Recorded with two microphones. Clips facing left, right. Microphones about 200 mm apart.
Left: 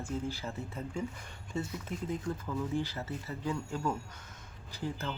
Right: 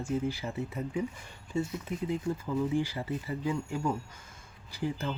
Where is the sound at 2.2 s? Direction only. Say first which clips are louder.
Right 5 dB; 10° right (ahead or behind).